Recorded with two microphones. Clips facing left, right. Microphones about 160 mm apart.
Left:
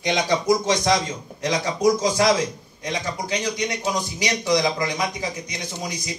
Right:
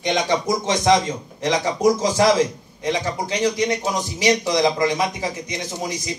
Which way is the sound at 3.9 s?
25° right (ahead or behind).